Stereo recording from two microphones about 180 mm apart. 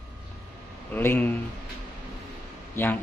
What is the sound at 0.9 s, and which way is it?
Mantra, 10° left (ahead or behind).